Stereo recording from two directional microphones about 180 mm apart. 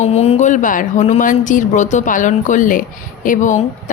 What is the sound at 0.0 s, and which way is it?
A woman's voice, 35° left (ahead or behind).